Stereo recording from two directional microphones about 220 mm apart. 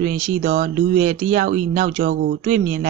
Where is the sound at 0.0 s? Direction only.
35° right (ahead or behind).